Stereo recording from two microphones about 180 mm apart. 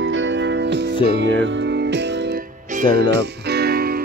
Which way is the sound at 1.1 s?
75° right (ahead or behind).